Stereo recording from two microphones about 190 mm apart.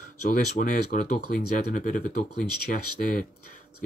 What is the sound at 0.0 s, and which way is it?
Speech, 45° left (ahead or behind).